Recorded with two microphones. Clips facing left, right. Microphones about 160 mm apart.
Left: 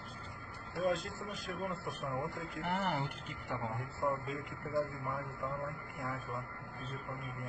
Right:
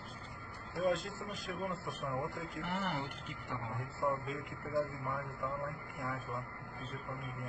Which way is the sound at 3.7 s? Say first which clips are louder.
Right 2 dB; centre (ahead or behind).